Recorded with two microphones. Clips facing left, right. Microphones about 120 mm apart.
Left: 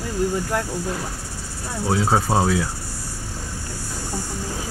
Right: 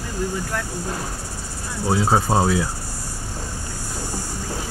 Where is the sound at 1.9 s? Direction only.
10° right (ahead or behind).